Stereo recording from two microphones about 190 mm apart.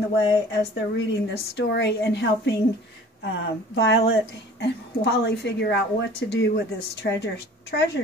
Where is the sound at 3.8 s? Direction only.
60° left (ahead or behind).